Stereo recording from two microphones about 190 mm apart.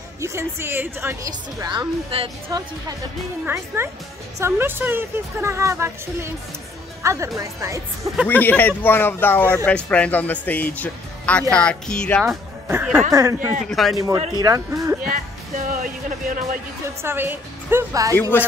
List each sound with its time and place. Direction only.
0.2 s a woman's voice: 15° right (ahead or behind)
3.4 s a woman's voice: 10° right (ahead or behind)
8.3 s speech: 10° left (ahead or behind)
12.6 s a woman's voice: 10° right (ahead or behind)
13.7 s speech: centre (ahead or behind)
13.9 s a woman's voice: 15° right (ahead or behind)
15.0 s music: 45° right (ahead or behind)
17.0 s a woman's voice: 10° right (ahead or behind)
18.3 s speech: 10° left (ahead or behind)